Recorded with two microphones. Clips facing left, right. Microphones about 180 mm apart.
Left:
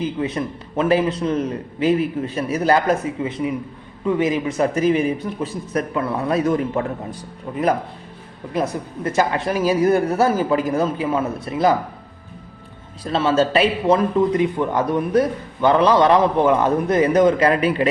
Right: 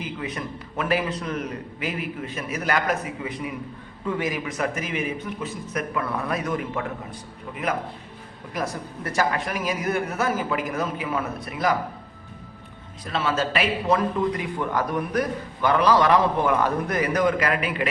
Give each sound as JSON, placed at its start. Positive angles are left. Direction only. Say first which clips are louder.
{"t": 0.0, "sound": "a man's voice", "louder": "left 8 dB", "side_deg": 30}
{"t": 8.5, "sound": "a man's voice", "louder": "left 6 dB", "side_deg": 20}
{"t": 13.1, "sound": "a man's voice", "louder": "left 7 dB", "side_deg": 30}